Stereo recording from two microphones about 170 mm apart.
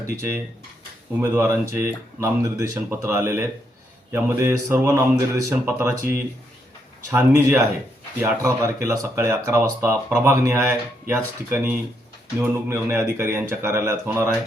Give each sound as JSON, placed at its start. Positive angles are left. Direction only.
{"t": 0.0, "sound": "speech", "side_deg": -15}
{"t": 7.1, "sound": "speech", "side_deg": -10}